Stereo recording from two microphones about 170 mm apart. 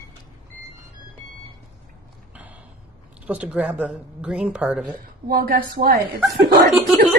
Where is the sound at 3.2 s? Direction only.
5° right (ahead or behind).